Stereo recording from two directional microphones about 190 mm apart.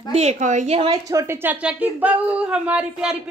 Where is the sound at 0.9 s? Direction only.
15° right (ahead or behind).